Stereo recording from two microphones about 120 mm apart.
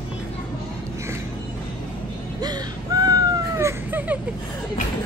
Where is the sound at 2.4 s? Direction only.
30° right (ahead or behind); by 4.2 s 15° right (ahead or behind).